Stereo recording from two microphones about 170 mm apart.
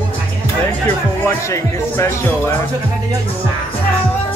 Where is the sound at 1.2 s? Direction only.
15° left (ahead or behind).